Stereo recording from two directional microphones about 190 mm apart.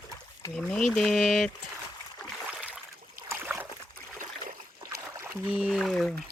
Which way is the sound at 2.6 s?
5° right (ahead or behind).